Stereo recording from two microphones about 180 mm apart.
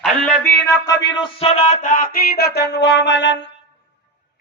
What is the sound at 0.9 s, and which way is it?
Music, 25° left (ahead or behind).